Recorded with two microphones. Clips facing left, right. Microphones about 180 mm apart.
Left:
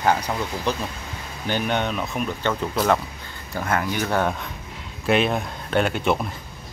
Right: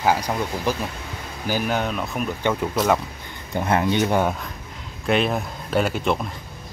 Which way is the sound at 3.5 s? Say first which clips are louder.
Right 4 dB; 20° right (ahead or behind).